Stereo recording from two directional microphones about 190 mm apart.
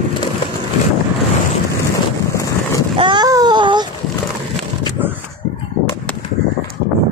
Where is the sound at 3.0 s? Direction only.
25° right (ahead or behind).